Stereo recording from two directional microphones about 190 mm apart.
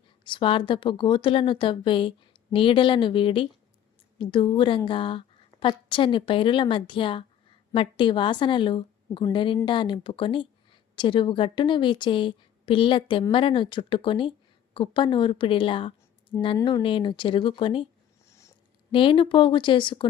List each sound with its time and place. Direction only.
0.3 s a woman's voice: 25° left (ahead or behind)
18.3 s a sound: 15° left (ahead or behind)
18.9 s a woman's voice: 25° left (ahead or behind)